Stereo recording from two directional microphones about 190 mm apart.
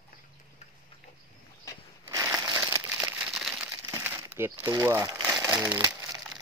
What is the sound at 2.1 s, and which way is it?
Crumpling, 15° right (ahead or behind).